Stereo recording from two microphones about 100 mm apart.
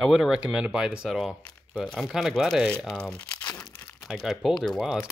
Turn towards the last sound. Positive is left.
turn(degrees=0)  # may be behind; listen again after turning